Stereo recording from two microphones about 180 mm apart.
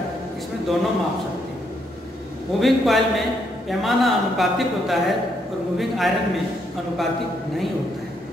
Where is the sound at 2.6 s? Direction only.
Centre (ahead or behind).